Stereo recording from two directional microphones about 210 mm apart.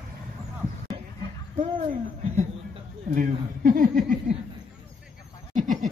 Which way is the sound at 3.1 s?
40° right (ahead or behind).